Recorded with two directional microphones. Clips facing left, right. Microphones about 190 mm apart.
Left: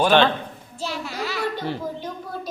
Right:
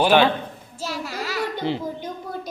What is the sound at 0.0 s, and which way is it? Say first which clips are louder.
Child singing: even; 10° right (ahead or behind).